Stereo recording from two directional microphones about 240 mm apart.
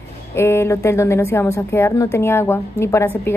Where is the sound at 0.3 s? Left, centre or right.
Centre.